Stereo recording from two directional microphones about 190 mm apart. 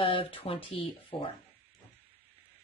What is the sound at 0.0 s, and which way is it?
Speech, 30° left (ahead or behind).